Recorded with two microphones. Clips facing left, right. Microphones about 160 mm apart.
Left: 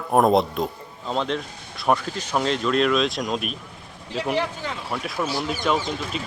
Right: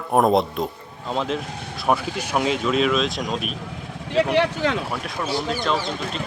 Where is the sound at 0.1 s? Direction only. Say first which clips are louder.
Even; centre (ahead or behind).